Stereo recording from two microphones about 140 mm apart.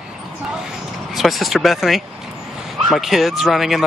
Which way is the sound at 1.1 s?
Centre (ahead or behind).